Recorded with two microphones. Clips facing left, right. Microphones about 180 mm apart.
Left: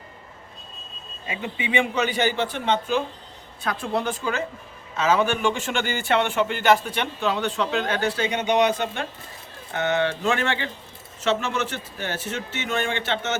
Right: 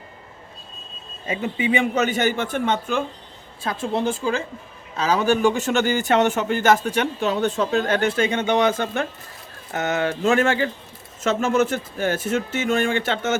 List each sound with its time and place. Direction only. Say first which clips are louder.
1.3 s a man's voice: right 5 dB; 40° right (ahead or behind)
3.6 s a man's voice: right 2 dB; 25° right (ahead or behind); by 8.2 s 50° right (ahead or behind)
9.7 s a man's voice: even; 45° right (ahead or behind)